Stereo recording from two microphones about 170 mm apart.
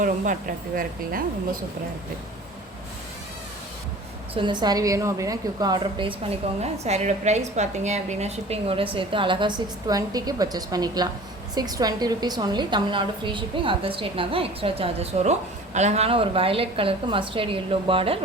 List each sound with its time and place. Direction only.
0.8 s speech: 55° right (ahead or behind)
4.4 s a woman's voice: 25° right (ahead or behind)
6.6 s a woman's voice: 40° right (ahead or behind)